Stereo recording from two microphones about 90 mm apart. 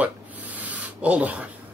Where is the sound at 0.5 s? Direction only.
15° right (ahead or behind).